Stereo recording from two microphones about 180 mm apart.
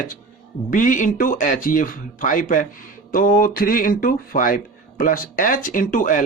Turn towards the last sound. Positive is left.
turn(degrees=50)  # may be behind; listen again after turning